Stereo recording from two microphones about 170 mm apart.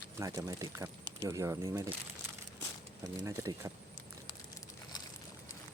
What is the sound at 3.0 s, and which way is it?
Speech, 20° right (ahead or behind).